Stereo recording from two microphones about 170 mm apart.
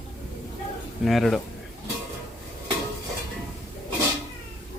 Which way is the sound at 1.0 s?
Centre (ahead or behind).